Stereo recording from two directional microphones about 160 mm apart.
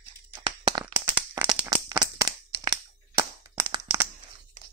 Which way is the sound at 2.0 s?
20° right (ahead or behind).